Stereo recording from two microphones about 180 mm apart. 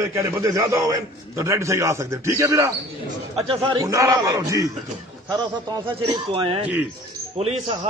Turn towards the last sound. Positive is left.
turn(degrees=-40)  # may be behind; listen again after turning